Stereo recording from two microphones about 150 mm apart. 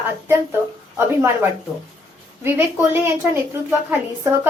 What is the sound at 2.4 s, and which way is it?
Speech, 15° right (ahead or behind).